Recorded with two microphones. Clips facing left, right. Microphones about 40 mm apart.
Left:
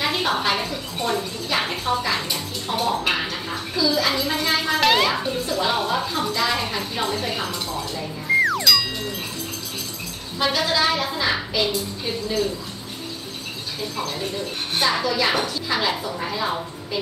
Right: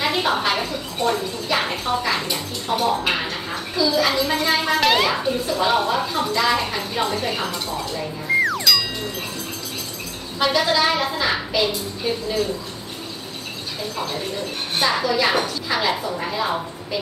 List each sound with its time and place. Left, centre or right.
0.0 s a woman's voice: centre
8.4 s music: centre
10.4 s a woman's voice: centre
14.8 s a woman's voice: centre